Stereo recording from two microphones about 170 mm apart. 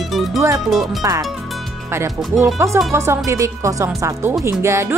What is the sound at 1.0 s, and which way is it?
Speech, 20° right (ahead or behind).